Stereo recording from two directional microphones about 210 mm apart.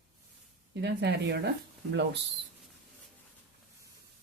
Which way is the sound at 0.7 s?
55° right (ahead or behind).